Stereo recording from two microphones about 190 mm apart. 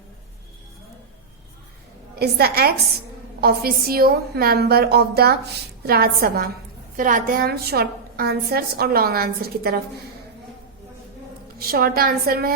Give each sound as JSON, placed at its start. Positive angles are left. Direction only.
{"t": 2.1, "sound": "a woman's voice", "side_deg": -55}
{"t": 11.6, "sound": "a woman's voice", "side_deg": -50}